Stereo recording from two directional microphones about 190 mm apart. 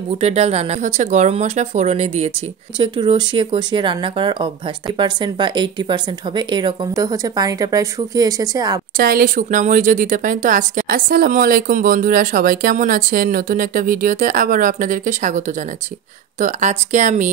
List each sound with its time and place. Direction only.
0.2 s speech: 35° right (ahead or behind); by 8.8 s 20° right (ahead or behind)
8.9 s a woman's voice: 50° right (ahead or behind)